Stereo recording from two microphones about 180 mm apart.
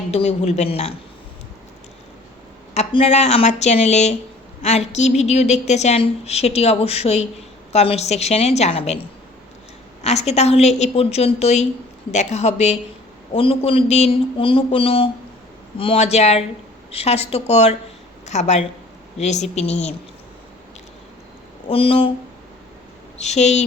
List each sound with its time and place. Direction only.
0.1 s a woman's voice: 35° left (ahead or behind)
2.7 s a woman's voice: 35° left (ahead or behind)
10.0 s a woman's voice: 35° left (ahead or behind)
21.7 s a woman's voice: 30° left (ahead or behind)
23.2 s a woman's voice: 40° left (ahead or behind)